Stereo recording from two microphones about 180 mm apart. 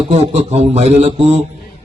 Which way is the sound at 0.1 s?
35° right (ahead or behind).